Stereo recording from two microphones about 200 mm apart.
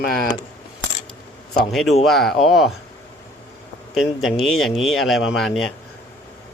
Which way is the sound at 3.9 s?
Centre (ahead or behind).